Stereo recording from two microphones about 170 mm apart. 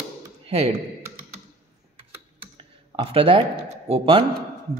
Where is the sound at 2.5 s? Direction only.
35° right (ahead or behind).